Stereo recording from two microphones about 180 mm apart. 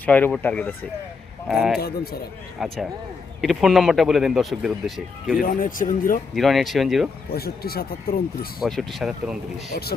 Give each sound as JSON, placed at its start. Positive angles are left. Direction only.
{"t": 0.0, "sound": "speech", "side_deg": 10}
{"t": 1.5, "sound": "speech", "side_deg": 0}
{"t": 5.4, "sound": "speech", "side_deg": 50}
{"t": 6.3, "sound": "speech", "side_deg": 0}
{"t": 7.3, "sound": "speech", "side_deg": 60}
{"t": 8.6, "sound": "speech", "side_deg": 0}